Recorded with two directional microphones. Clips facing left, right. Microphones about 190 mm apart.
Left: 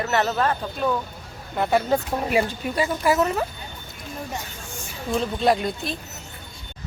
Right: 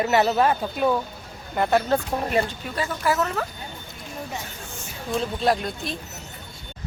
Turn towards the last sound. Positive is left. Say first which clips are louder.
# left 2 dB
turn(degrees=0)  # may be behind; listen again after turning